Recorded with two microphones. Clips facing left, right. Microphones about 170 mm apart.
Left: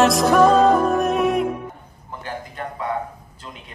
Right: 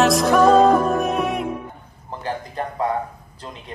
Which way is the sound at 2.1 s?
35° right (ahead or behind).